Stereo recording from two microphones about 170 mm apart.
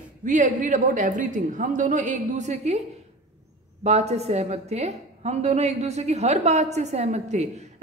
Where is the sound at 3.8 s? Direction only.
40° right (ahead or behind).